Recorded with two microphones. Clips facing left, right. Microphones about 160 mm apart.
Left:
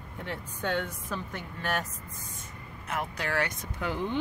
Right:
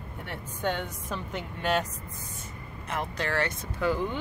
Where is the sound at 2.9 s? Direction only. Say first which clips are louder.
Right 1 dB; 10° left (ahead or behind).